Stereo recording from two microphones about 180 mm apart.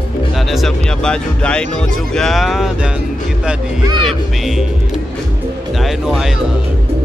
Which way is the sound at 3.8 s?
25° right (ahead or behind).